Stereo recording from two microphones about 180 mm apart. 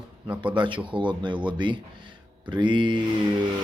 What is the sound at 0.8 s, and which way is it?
Speech, 25° right (ahead or behind).